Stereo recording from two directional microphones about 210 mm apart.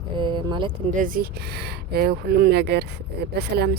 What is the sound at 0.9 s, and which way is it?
Speech, 40° right (ahead or behind).